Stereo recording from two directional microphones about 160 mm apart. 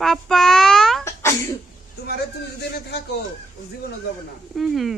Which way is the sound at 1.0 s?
15° left (ahead or behind).